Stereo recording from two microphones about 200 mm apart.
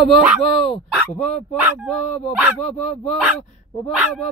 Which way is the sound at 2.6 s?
35° left (ahead or behind).